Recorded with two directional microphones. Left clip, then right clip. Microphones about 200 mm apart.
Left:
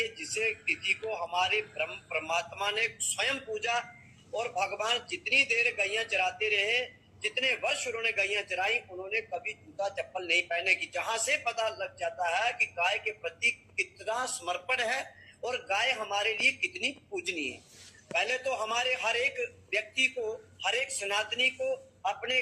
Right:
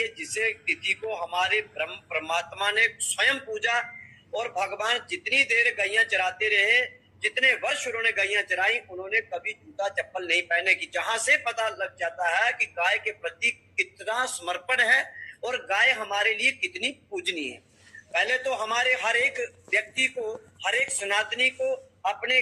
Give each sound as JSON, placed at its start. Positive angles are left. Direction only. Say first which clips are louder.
{"t": 0.6, "sound": "speech", "louder": "right 3 dB", "side_deg": -60}
{"t": 1.0, "sound": "a man's voice", "louder": "right 3 dB", "side_deg": -15}
{"t": 5.0, "sound": "speech", "louder": "right 2 dB", "side_deg": -60}
{"t": 5.5, "sound": "a man's voice", "louder": "right 5 dB", "side_deg": -15}
{"t": 13.4, "sound": "a man's voice", "louder": "right 3 dB", "side_deg": -55}
{"t": 14.0, "sound": "a man's voice", "louder": "right 5 dB", "side_deg": -15}
{"t": 16.6, "sound": "speech", "louder": "right 3 dB", "side_deg": -55}
{"t": 16.8, "sound": "a man's voice", "louder": "right 4 dB", "side_deg": -10}